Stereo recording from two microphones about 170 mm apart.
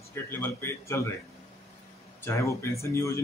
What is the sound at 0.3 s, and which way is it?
Speech, 15° left (ahead or behind).